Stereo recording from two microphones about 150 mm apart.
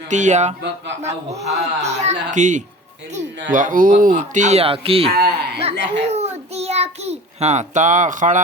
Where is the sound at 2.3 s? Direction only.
55° right (ahead or behind).